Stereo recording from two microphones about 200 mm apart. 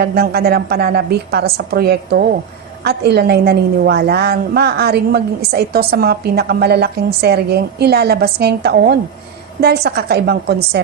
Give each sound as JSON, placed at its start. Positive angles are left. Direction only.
{"t": 0.0, "sound": "a woman's voice", "side_deg": -50}